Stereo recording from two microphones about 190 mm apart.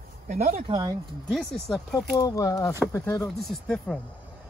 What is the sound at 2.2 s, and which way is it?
Speech, 20° left (ahead or behind).